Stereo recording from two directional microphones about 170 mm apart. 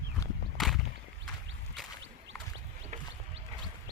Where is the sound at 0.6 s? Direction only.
Centre (ahead or behind).